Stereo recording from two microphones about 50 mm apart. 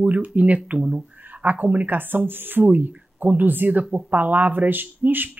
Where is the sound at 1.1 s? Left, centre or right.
Right.